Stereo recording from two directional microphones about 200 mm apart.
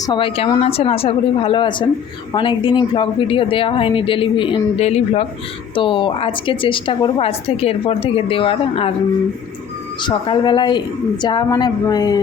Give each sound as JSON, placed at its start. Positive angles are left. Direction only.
{"t": 0.0, "sound": "a woman's voice", "side_deg": 25}
{"t": 10.0, "sound": "a woman's voice", "side_deg": 25}